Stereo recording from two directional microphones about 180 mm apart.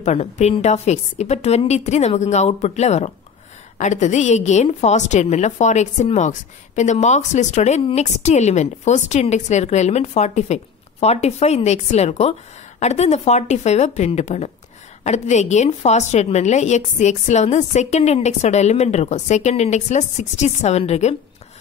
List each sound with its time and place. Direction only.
0.0 s a woman's voice: 40° left (ahead or behind)